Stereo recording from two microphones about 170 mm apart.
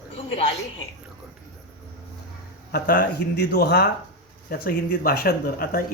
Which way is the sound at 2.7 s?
65° left (ahead or behind).